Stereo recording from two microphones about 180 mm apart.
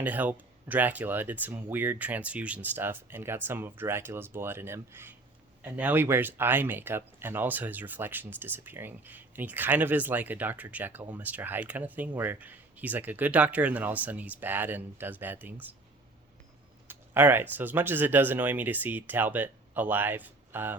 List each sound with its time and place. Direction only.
0.0 s speech: 10° right (ahead or behind)
16.9 s speech: 10° right (ahead or behind)